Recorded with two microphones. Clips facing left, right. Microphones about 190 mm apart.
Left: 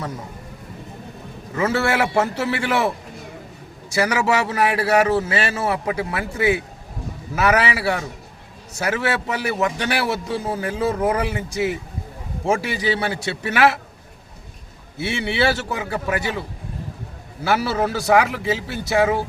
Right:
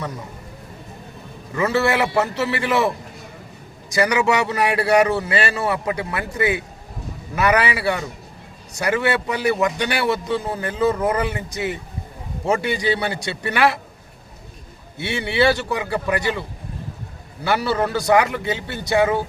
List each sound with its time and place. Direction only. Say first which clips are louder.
1.5 s a man's voice: right 1 dB; 5° left (ahead or behind)
3.9 s a man's voice: right 1 dB; 5° left (ahead or behind)
14.9 s a man's voice: right 2 dB; 5° left (ahead or behind)
17.4 s a man's voice: even; 5° left (ahead or behind)